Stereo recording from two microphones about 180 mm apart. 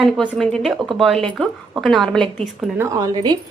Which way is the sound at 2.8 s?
20° right (ahead or behind).